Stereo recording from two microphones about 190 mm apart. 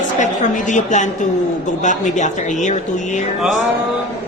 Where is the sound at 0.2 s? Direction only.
40° left (ahead or behind).